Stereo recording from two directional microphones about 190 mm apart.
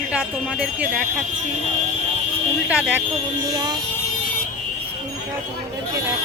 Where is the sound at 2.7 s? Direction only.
5° right (ahead or behind).